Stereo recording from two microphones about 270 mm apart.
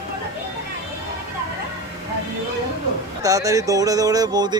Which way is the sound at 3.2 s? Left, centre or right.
Centre.